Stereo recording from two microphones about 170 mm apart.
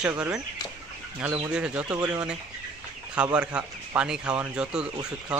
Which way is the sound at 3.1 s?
5° right (ahead or behind).